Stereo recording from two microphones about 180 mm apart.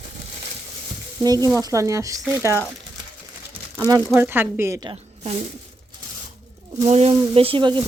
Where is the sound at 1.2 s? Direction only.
20° right (ahead or behind).